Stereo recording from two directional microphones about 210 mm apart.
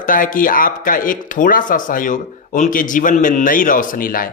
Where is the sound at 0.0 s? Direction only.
40° left (ahead or behind).